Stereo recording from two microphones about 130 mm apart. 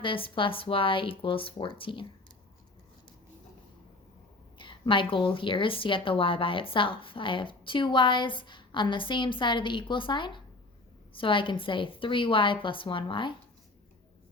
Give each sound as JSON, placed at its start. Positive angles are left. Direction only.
{"t": 0.0, "sound": "a woman's voice", "side_deg": 40}
{"t": 4.5, "sound": "a woman's voice", "side_deg": 40}